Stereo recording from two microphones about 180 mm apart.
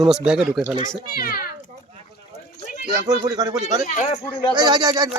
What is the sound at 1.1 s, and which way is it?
Speech, 55° left (ahead or behind).